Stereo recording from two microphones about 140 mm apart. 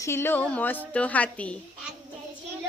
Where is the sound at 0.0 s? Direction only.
20° left (ahead or behind).